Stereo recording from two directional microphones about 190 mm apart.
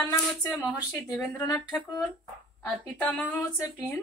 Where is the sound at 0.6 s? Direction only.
5° left (ahead or behind).